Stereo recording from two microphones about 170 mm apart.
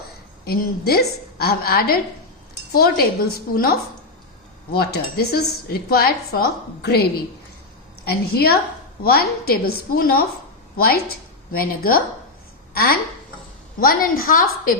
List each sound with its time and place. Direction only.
0.4 s a woman's voice: 65° left (ahead or behind)